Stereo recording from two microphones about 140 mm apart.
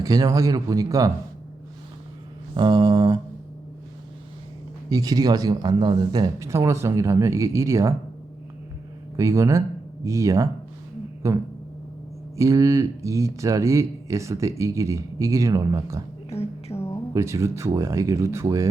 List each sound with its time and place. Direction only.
0.0 s speech: 25° right (ahead or behind)
2.6 s speech: 30° right (ahead or behind)
4.9 s speech: 25° right (ahead or behind)
9.1 s speech: 20° right (ahead or behind)
16.3 s music: 45° left (ahead or behind)
16.7 s a sound: 20° left (ahead or behind)
17.2 s speech: 20° right (ahead or behind)